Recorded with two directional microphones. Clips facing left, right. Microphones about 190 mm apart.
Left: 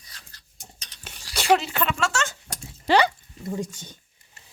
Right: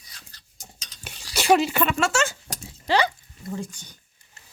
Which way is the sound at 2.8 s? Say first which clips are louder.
Left 3 dB; 70° left (ahead or behind).